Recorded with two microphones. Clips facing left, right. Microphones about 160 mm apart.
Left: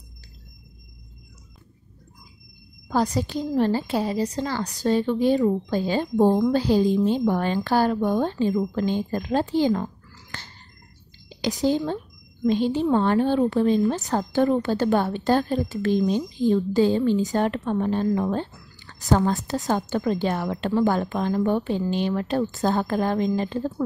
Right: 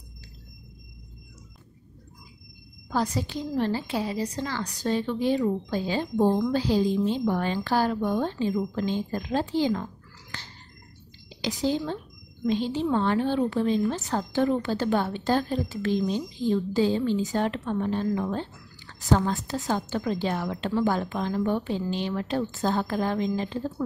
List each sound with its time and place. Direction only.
2.9 s a woman's voice: 40° left (ahead or behind)
6.2 s a woman's voice: 35° left (ahead or behind)
6.5 s a woman's voice: 50° left (ahead or behind)
10.3 s a sound: 50° left (ahead or behind)
11.2 s a woman's voice: 50° left (ahead or behind)